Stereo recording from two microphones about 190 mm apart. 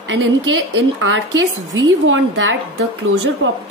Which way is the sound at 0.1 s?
90° right.